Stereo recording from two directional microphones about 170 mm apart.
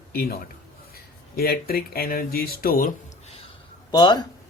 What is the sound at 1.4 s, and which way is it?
Speech, 65° left (ahead or behind).